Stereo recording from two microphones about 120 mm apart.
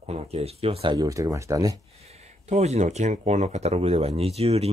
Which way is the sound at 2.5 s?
65° right (ahead or behind).